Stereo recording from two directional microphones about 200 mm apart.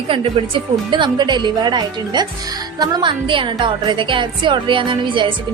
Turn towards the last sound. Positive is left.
turn(degrees=-25)  # may be behind; listen again after turning